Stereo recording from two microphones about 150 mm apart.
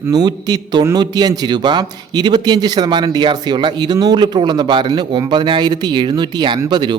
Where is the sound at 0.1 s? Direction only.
25° right (ahead or behind).